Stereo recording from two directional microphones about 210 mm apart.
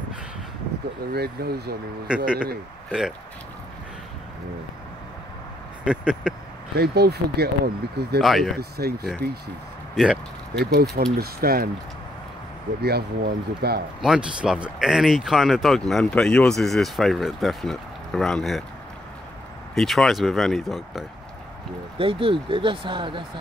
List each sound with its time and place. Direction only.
1.1 s speech: 50° right (ahead or behind)
2.0 s speech: 5° right (ahead or behind)
5.9 s speech: 5° right (ahead or behind)
6.7 s speech: 50° right (ahead or behind)
8.2 s speech: centre (ahead or behind)
8.5 s speech: 50° right (ahead or behind)
9.9 s speech: centre (ahead or behind)
10.6 s speech: 50° right (ahead or behind)
12.8 s speech: 50° right (ahead or behind)
14.0 s speech: 5° right (ahead or behind)
19.7 s speech: centre (ahead or behind)
21.9 s speech: 25° right (ahead or behind)